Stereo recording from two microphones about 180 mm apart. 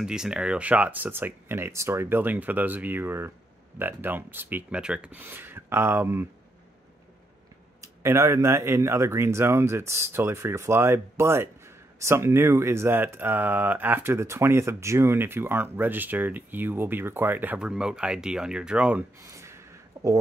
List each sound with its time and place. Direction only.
0.0 s speech: 5° right (ahead or behind)
7.8 s speech: 15° right (ahead or behind)
19.2 s a sound: 15° right (ahead or behind)